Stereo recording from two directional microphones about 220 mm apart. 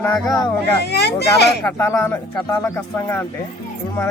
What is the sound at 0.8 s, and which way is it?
Speech, 50° left (ahead or behind).